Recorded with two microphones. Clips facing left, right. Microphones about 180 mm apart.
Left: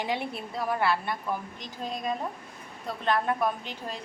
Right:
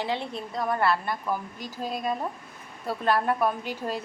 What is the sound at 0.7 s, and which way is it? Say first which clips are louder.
A woman's voice: right 2 dB; centre (ahead or behind).